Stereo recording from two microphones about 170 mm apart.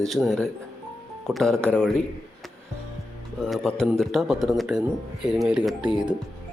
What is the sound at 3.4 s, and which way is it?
A man's voice, 5° left (ahead or behind).